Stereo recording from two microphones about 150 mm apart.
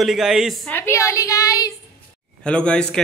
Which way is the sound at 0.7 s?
15° left (ahead or behind).